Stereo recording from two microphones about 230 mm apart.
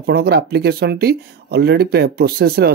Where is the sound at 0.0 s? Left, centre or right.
Right.